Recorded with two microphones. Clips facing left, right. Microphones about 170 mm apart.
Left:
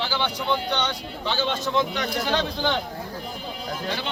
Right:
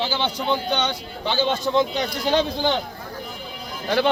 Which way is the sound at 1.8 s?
30° right (ahead or behind).